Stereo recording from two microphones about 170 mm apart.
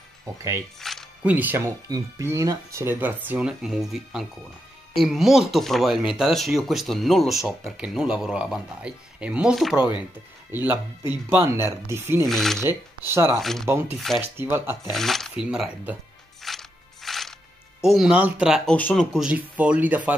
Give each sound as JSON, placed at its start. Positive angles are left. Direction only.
{"t": 0.2, "sound": "speech", "side_deg": -15}
{"t": 0.7, "sound": "music", "side_deg": 0}
{"t": 1.3, "sound": "speech", "side_deg": -10}
{"t": 12.3, "sound": "speech", "side_deg": 0}
{"t": 12.6, "sound": "speech", "side_deg": -15}
{"t": 13.4, "sound": "speech", "side_deg": 0}
{"t": 13.7, "sound": "speech", "side_deg": -15}
{"t": 13.9, "sound": "speech", "side_deg": 0}
{"t": 14.3, "sound": "speech", "side_deg": -15}
{"t": 14.9, "sound": "speech", "side_deg": 0}
{"t": 16.4, "sound": "music", "side_deg": 0}
{"t": 17.8, "sound": "speech", "side_deg": -5}
{"t": 18.7, "sound": "speech", "side_deg": 5}
{"t": 19.1, "sound": "speech", "side_deg": -5}